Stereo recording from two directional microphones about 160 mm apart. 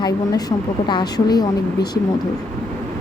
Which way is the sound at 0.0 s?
25° left (ahead or behind).